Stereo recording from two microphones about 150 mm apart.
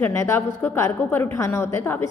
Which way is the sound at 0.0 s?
15° left (ahead or behind).